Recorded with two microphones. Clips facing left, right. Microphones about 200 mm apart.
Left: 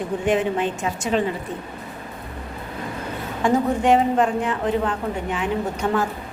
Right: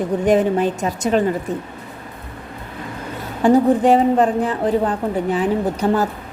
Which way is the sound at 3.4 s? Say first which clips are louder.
Right 5 dB; 35° right (ahead or behind).